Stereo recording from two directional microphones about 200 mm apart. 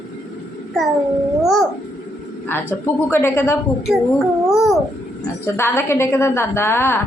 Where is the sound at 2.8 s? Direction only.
10° left (ahead or behind).